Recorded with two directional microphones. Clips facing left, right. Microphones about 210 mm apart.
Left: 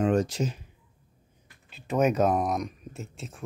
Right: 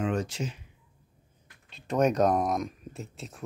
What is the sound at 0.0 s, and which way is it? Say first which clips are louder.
Speech: left 5 dB; 40° left (ahead or behind).